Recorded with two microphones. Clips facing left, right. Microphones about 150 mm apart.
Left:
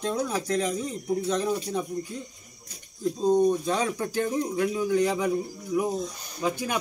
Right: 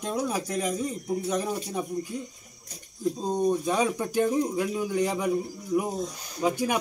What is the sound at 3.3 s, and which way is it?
Speech, 10° right (ahead or behind).